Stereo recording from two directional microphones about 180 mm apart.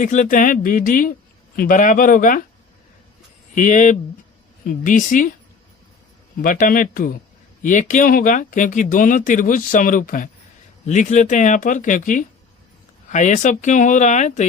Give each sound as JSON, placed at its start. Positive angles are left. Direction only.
{"t": 0.0, "sound": "speech", "side_deg": 45}
{"t": 3.5, "sound": "speech", "side_deg": 45}
{"t": 6.4, "sound": "speech", "side_deg": 50}